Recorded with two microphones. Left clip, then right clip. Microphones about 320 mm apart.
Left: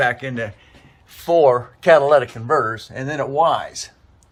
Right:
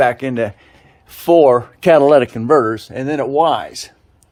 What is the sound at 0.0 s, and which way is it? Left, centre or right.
Speech, right.